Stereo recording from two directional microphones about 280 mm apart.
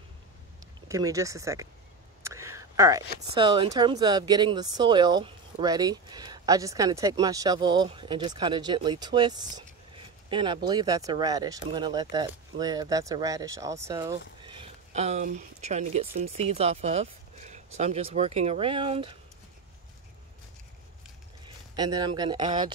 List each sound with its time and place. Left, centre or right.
0.8 s speech: centre
2.2 s a sound: centre
3.3 s speech: centre
21.7 s speech: centre